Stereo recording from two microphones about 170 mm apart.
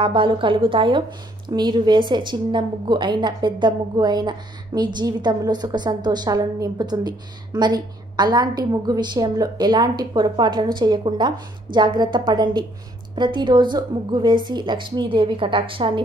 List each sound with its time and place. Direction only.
0.0 s a woman's voice: 30° right (ahead or behind)